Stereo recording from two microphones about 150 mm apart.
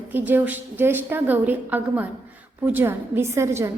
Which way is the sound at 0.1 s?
10° right (ahead or behind).